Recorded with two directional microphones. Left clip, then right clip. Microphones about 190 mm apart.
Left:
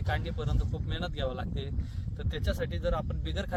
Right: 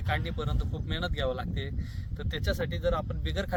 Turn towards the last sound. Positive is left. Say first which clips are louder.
# right 3 dB
turn(degrees=-20)  # may be behind; listen again after turning